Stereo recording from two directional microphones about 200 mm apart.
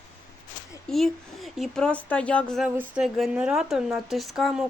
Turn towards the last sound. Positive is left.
turn(degrees=0)  # may be behind; listen again after turning